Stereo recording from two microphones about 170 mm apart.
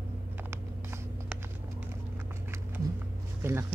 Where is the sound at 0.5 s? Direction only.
15° right (ahead or behind).